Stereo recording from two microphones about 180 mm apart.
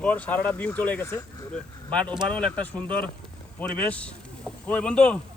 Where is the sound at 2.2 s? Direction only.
5° left (ahead or behind).